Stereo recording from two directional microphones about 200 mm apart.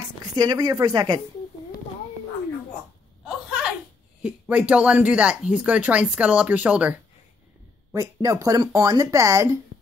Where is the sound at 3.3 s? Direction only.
5° right (ahead or behind).